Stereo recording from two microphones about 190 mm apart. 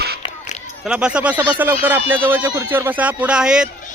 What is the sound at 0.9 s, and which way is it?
A man's voice, 5° right (ahead or behind).